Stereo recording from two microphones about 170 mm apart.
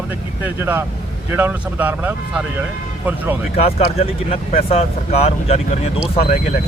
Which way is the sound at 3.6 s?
35° left (ahead or behind).